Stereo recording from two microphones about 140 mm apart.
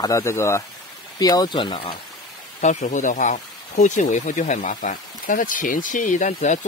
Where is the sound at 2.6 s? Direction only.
60° left (ahead or behind).